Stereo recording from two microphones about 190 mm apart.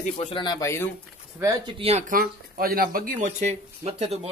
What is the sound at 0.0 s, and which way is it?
Speech, 35° left (ahead or behind).